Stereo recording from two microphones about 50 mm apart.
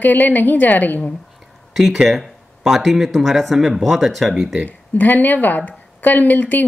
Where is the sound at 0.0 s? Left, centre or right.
Left.